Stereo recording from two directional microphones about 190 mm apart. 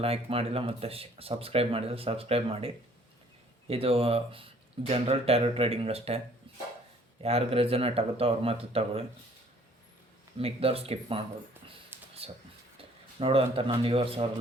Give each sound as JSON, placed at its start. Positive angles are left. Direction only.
{"t": 0.0, "sound": "speech", "side_deg": -30}
{"t": 7.2, "sound": "speech", "side_deg": -30}
{"t": 10.3, "sound": "speech", "side_deg": -30}
{"t": 11.9, "sound": "a sound", "side_deg": -10}
{"t": 13.1, "sound": "speech", "side_deg": -30}